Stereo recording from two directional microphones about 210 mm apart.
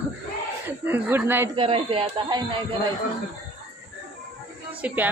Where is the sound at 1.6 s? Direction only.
25° right (ahead or behind).